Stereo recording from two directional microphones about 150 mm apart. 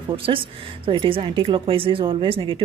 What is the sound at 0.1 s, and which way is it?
Speech, 35° right (ahead or behind).